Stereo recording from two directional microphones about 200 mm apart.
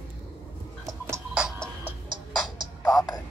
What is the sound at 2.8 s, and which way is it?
Music, 20° left (ahead or behind).